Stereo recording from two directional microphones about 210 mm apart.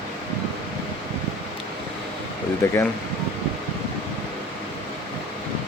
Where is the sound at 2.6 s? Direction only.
10° left (ahead or behind).